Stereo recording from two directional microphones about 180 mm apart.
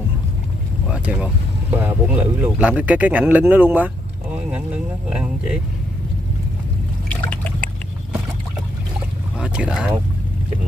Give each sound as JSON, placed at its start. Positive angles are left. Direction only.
{"t": 0.8, "sound": "speech", "side_deg": -5}
{"t": 7.1, "sound": "liquid", "side_deg": 5}
{"t": 9.4, "sound": "speech", "side_deg": -5}